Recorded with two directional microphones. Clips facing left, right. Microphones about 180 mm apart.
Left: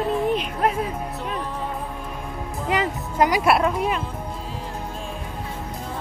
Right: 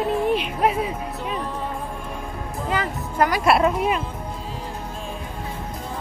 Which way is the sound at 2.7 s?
20° left (ahead or behind).